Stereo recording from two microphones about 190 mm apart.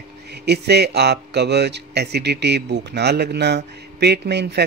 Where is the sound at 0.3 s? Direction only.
60° right (ahead or behind).